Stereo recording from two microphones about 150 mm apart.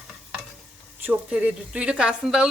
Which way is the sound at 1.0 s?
10° right (ahead or behind).